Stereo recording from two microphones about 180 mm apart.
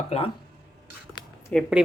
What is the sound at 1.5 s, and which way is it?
Speech, 5° left (ahead or behind).